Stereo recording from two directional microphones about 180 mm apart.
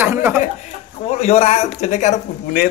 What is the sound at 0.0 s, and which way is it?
Speech, 10° right (ahead or behind).